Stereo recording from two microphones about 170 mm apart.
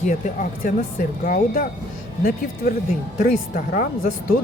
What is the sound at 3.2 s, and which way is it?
Speech, 55° left (ahead or behind).